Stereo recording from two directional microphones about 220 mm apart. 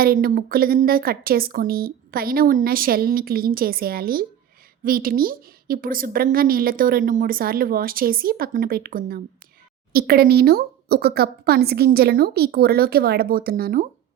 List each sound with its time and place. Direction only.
0.0 s a woman's voice: 40° right (ahead or behind)